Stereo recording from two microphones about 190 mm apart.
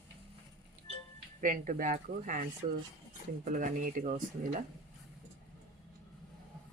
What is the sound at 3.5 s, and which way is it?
Speech, 45° right (ahead or behind).